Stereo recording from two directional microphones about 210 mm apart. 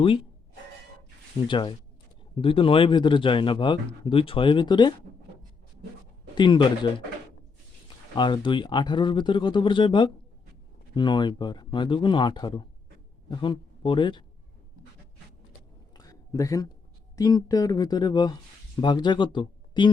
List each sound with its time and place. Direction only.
1.5 s speech: 25° left (ahead or behind)
6.3 s speech: 20° left (ahead or behind)
8.1 s speech: 20° left (ahead or behind)
16.0 s a sound: 15° left (ahead or behind)
17.2 s speech: 15° left (ahead or behind)